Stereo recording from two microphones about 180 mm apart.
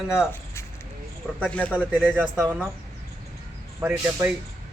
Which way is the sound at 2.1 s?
10° right (ahead or behind).